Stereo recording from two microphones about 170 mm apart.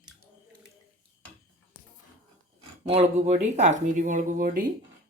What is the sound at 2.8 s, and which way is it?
Speech, 40° right (ahead or behind).